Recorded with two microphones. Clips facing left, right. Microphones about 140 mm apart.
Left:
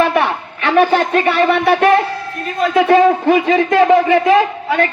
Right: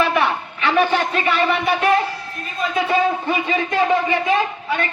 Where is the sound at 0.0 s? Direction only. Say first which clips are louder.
Left 4 dB; 55° left (ahead or behind).